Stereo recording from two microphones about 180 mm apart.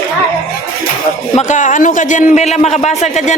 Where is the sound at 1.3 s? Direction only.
40° left (ahead or behind).